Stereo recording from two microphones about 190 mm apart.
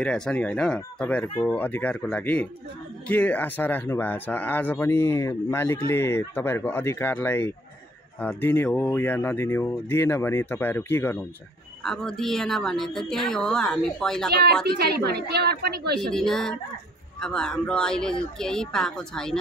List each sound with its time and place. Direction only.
0.0 s a woman's voice: 5° left (ahead or behind)
14.4 s a woman's voice: 55° right (ahead or behind)
16.0 s a woman's voice: 5° left (ahead or behind)